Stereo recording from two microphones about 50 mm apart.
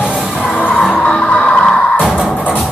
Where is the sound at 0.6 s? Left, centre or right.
Centre.